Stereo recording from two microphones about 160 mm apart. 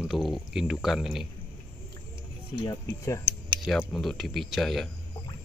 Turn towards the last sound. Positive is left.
turn(degrees=0)  # may be behind; listen again after turning